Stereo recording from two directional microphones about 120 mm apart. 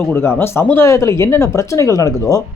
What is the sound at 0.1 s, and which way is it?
Speech, 20° left (ahead or behind).